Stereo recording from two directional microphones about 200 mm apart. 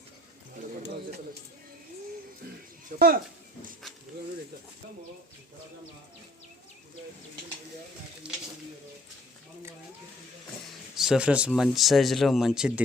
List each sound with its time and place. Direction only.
2.9 s speech: 45° right (ahead or behind)
8.2 s speech: 5° right (ahead or behind)
10.9 s speech: centre (ahead or behind)